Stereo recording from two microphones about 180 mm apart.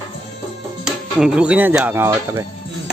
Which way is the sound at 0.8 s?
5° right (ahead or behind).